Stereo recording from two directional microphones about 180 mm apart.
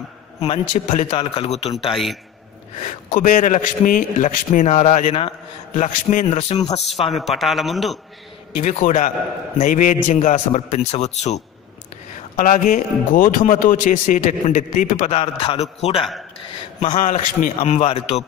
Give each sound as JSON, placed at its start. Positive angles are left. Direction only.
{"t": 0.4, "sound": "a man's voice", "side_deg": 40}
{"t": 2.8, "sound": "a man's voice", "side_deg": 45}
{"t": 7.1, "sound": "a man's voice", "side_deg": 0}
{"t": 8.5, "sound": "a man's voice", "side_deg": 40}
{"t": 17.0, "sound": "a man's voice", "side_deg": 50}
{"t": 17.7, "sound": "a man's voice", "side_deg": 35}